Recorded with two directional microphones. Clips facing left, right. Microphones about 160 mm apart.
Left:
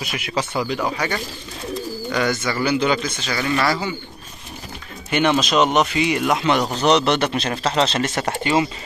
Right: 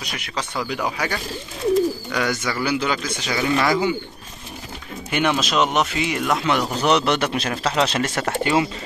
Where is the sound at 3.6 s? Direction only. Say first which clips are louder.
Right 3 dB; 15° right (ahead or behind).